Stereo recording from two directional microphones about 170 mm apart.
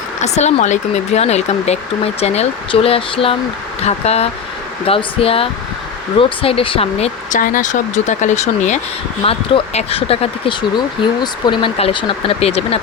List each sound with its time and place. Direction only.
0.2 s speech: 40° left (ahead or behind)